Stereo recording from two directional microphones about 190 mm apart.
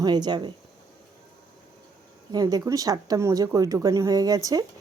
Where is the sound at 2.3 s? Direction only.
20° right (ahead or behind).